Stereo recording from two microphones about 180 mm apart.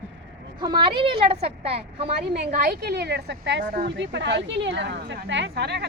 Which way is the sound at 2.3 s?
55° right (ahead or behind).